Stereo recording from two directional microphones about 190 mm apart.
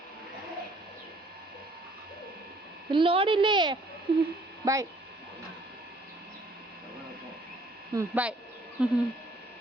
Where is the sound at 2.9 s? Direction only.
30° right (ahead or behind).